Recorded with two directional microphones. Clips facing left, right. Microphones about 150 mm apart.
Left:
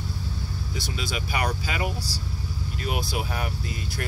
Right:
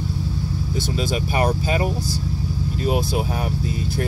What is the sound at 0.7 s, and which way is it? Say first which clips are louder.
Speech: right 8 dB; 50° right (ahead or behind).